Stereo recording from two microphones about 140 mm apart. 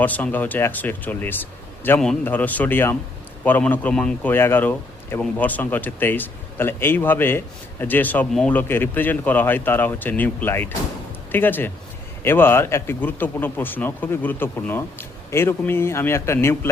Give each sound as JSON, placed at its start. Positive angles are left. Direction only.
{"t": 0.0, "sound": "a man's voice", "side_deg": 10}